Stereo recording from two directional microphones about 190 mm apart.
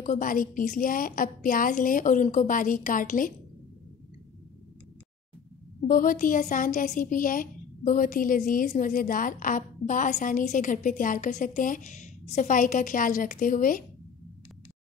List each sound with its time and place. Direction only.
0.0 s a woman's voice: 45° left (ahead or behind)
5.9 s a woman's voice: 45° left (ahead or behind)